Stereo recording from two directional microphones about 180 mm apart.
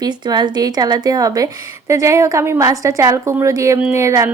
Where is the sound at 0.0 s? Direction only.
20° right (ahead or behind).